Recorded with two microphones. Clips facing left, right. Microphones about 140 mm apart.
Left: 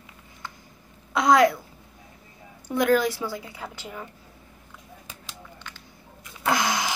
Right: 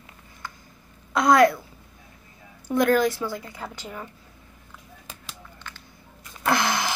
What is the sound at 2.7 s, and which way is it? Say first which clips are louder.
Speech: right 1 dB; 10° left (ahead or behind).